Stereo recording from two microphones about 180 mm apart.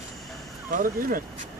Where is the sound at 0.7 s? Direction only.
50° right (ahead or behind).